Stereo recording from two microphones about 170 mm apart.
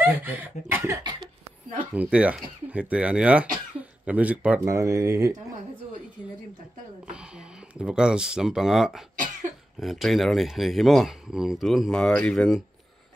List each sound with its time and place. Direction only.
0.0 s speech: 10° right (ahead or behind)
2.0 s speech: 5° right (ahead or behind)
7.1 s speech: 5° right (ahead or behind)